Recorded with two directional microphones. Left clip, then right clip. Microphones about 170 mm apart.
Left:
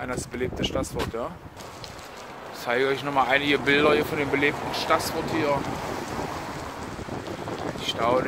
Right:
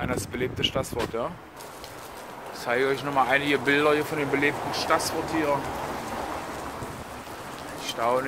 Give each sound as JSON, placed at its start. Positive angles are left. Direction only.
{"t": 0.0, "sound": "speech", "side_deg": -10}
{"t": 2.6, "sound": "speech", "side_deg": 15}
{"t": 7.8, "sound": "boat", "side_deg": 20}